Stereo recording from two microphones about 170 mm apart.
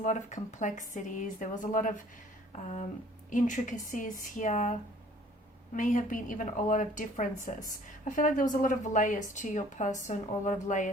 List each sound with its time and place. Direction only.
0.0 s a woman's voice: 45° left (ahead or behind)
3.2 s a woman's voice: 45° left (ahead or behind)